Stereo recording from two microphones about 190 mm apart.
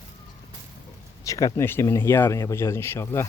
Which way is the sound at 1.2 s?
15° left (ahead or behind).